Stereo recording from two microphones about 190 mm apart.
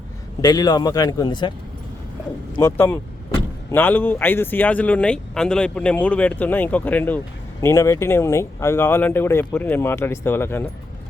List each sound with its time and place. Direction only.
0.4 s a man's voice: 20° left (ahead or behind)
2.6 s speech: 15° left (ahead or behind)